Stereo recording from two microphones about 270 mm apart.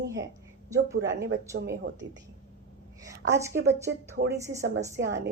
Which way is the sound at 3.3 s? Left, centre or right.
Centre.